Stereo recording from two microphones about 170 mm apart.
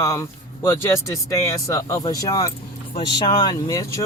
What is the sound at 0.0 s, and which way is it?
Speech, 20° left (ahead or behind).